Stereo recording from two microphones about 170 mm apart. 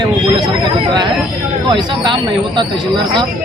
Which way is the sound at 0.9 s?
25° right (ahead or behind).